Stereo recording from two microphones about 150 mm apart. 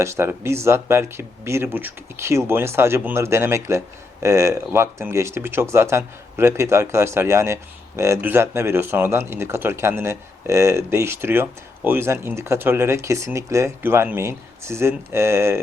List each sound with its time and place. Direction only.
0.0 s speech: 15° right (ahead or behind)